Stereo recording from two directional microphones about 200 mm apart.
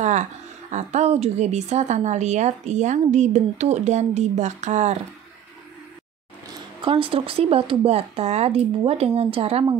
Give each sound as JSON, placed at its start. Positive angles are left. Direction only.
{"t": 0.0, "sound": "a woman's voice", "side_deg": -35}
{"t": 6.8, "sound": "speech", "side_deg": -25}